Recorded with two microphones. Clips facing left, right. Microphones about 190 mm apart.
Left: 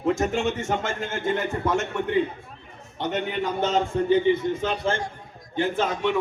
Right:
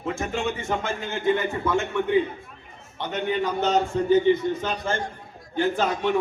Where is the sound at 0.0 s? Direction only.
40° left (ahead or behind).